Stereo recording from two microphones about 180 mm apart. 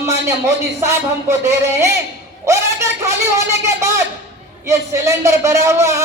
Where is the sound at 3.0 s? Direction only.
15° right (ahead or behind).